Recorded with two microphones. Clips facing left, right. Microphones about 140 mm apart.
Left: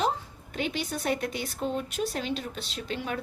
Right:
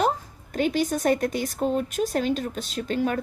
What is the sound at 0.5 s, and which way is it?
A woman's voice, 45° right (ahead or behind).